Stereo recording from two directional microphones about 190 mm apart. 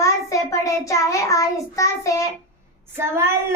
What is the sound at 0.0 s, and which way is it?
Child singing, 15° left (ahead or behind).